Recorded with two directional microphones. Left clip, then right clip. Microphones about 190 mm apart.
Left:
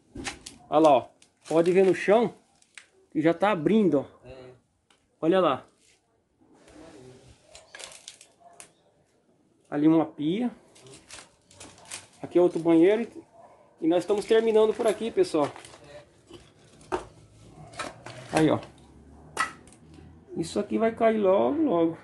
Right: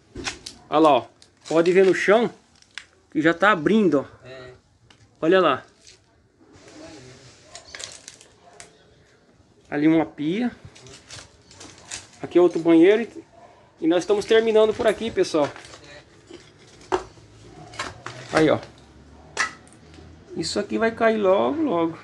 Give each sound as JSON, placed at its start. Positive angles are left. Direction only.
{"t": 0.2, "sound": "a sound", "side_deg": 10}
{"t": 1.5, "sound": "speech", "side_deg": 10}
{"t": 5.2, "sound": "speech", "side_deg": 5}
{"t": 9.7, "sound": "speech", "side_deg": 15}
{"t": 12.2, "sound": "speech", "side_deg": 5}
{"t": 18.3, "sound": "speech", "side_deg": 10}
{"t": 20.3, "sound": "speech", "side_deg": 10}